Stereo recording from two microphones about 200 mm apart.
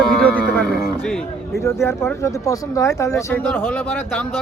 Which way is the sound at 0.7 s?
50° left (ahead or behind).